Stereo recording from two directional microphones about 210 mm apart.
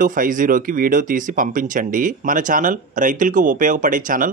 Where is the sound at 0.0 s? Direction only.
40° right (ahead or behind).